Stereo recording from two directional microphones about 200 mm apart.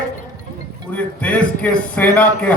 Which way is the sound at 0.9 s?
5° left (ahead or behind).